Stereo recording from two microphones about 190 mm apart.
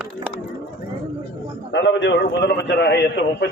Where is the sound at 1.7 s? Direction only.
70° left (ahead or behind).